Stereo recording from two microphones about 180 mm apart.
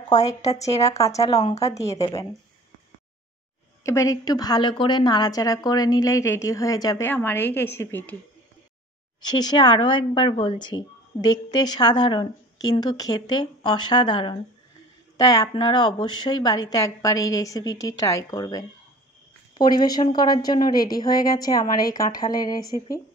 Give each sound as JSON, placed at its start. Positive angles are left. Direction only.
{"t": 0.1, "sound": "a woman's voice", "side_deg": 20}
{"t": 3.8, "sound": "a woman's voice", "side_deg": 15}
{"t": 9.2, "sound": "speech", "side_deg": 25}